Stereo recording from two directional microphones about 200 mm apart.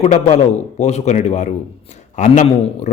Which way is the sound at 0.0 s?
35° left (ahead or behind).